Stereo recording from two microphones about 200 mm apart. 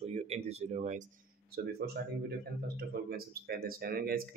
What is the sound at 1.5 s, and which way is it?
Speech, 50° right (ahead or behind).